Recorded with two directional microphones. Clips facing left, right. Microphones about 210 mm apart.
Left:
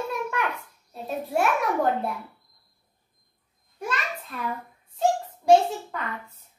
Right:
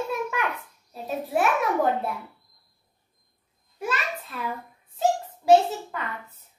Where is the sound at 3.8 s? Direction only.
5° right (ahead or behind).